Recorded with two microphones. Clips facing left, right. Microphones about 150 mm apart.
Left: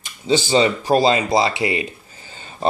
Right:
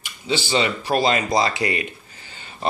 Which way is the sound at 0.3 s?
45° left (ahead or behind).